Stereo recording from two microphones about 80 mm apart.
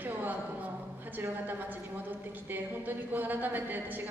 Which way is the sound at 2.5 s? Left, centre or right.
Right.